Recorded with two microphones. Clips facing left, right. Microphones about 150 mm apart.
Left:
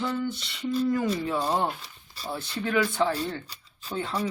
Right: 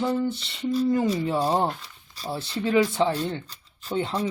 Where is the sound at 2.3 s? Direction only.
30° right (ahead or behind).